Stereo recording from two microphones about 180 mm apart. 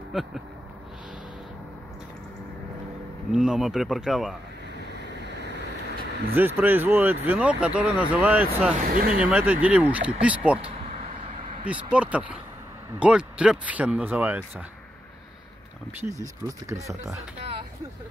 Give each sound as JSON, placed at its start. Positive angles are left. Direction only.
{"t": 0.1, "sound": "speech", "side_deg": 0}
{"t": 3.3, "sound": "speech", "side_deg": -5}
{"t": 4.9, "sound": "vehicle", "side_deg": -70}
{"t": 6.3, "sound": "speech", "side_deg": -10}
{"t": 8.8, "sound": "speech", "side_deg": -50}
{"t": 9.2, "sound": "speech", "side_deg": -10}
{"t": 11.6, "sound": "speech", "side_deg": -5}
{"t": 16.0, "sound": "speech", "side_deg": -15}